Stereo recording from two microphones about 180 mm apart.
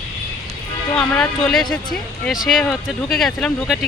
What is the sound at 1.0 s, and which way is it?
Speech, 5° left (ahead or behind).